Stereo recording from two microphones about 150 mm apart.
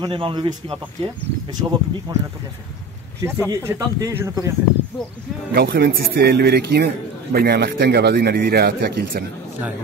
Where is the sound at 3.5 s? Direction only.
20° right (ahead or behind).